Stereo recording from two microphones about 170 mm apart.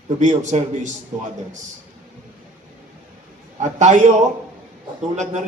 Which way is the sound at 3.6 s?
45° right (ahead or behind).